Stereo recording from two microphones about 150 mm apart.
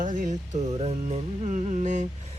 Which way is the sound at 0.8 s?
45° right (ahead or behind).